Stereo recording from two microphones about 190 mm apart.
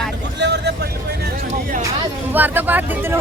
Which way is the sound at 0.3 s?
65° right (ahead or behind).